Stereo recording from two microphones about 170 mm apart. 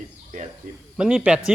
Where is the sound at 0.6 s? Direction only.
50° right (ahead or behind).